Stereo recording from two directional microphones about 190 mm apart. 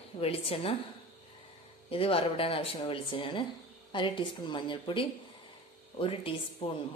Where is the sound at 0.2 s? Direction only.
30° left (ahead or behind).